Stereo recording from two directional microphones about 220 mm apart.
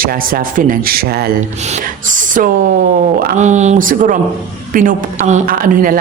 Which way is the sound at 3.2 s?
35° right (ahead or behind).